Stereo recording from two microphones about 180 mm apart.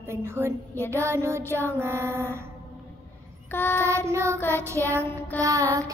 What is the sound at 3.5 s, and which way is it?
Speech, 10° left (ahead or behind).